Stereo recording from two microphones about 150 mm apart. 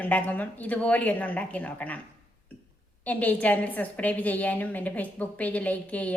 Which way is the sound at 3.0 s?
10° left (ahead or behind).